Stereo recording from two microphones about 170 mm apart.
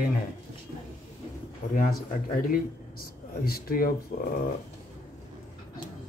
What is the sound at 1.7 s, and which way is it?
Speech, 55° left (ahead or behind).